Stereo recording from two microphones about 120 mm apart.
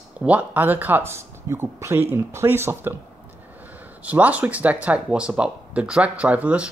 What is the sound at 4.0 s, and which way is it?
Speech, 10° right (ahead or behind).